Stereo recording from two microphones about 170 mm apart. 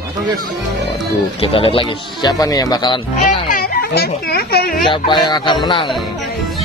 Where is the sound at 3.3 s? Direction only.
55° left (ahead or behind).